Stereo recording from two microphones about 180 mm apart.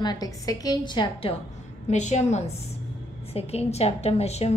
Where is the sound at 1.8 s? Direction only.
40° left (ahead or behind).